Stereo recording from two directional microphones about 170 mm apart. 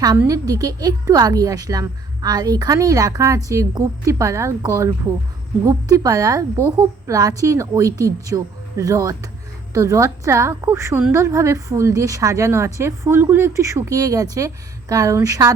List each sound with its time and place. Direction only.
0.2 s a woman's voice: 20° right (ahead or behind)